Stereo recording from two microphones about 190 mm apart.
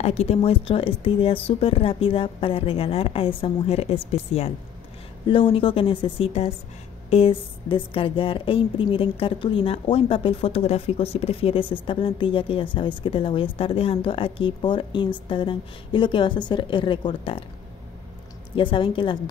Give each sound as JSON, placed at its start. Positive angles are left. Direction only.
{"t": 0.0, "sound": "speech", "side_deg": 35}
{"t": 18.6, "sound": "speech", "side_deg": 25}